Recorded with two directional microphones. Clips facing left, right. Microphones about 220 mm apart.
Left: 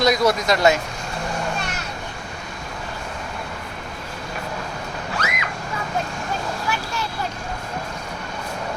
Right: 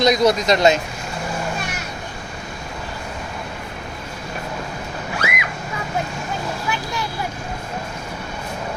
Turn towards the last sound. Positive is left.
turn(degrees=-15)  # may be behind; listen again after turning